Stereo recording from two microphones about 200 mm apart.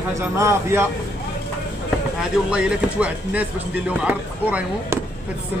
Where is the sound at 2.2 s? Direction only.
5° right (ahead or behind).